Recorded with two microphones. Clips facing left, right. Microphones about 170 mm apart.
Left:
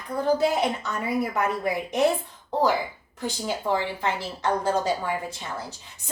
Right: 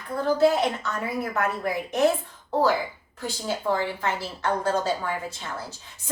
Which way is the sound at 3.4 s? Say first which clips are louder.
Right 1 dB; 15° left (ahead or behind).